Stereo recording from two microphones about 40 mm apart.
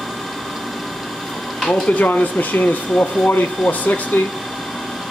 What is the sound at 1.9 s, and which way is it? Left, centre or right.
Speech, left.